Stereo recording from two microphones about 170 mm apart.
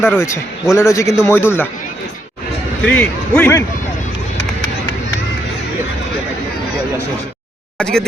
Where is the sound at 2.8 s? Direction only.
10° left (ahead or behind).